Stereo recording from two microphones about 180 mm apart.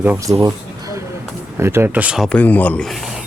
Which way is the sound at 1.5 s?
15° right (ahead or behind).